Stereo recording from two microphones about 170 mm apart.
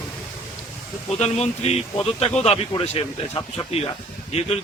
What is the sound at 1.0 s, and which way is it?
Speech, 40° left (ahead or behind).